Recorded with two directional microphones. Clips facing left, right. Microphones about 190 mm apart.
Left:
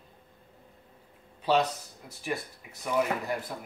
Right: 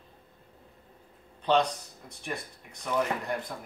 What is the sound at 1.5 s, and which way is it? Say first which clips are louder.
Speech: even; 5° left (ahead or behind).